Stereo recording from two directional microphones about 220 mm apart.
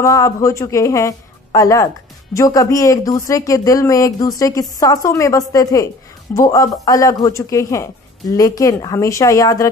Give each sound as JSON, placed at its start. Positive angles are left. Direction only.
{"t": 0.0, "sound": "speech", "side_deg": 15}